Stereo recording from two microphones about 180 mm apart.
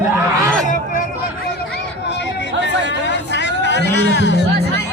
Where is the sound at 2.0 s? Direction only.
70° left (ahead or behind).